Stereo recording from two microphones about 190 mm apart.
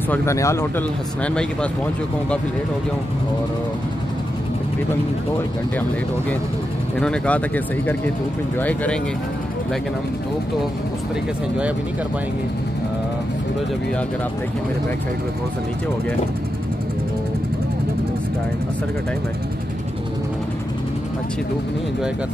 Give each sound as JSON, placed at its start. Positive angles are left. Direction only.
{"t": 0.1, "sound": "speech", "side_deg": 15}
{"t": 7.0, "sound": "speech", "side_deg": 5}